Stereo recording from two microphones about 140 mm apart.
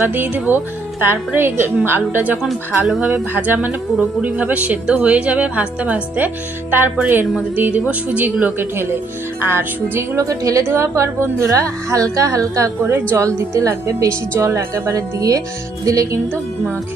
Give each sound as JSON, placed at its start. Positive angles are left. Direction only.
{"t": 0.1, "sound": "speech", "side_deg": -15}
{"t": 2.4, "sound": "speech", "side_deg": 0}
{"t": 3.1, "sound": "a woman's voice", "side_deg": -15}